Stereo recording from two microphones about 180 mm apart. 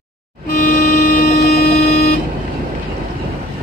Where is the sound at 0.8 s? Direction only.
55° left (ahead or behind).